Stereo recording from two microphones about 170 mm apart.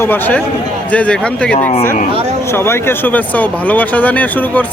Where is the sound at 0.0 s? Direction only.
10° left (ahead or behind).